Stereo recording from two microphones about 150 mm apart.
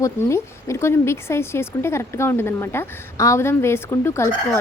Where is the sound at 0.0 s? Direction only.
20° left (ahead or behind).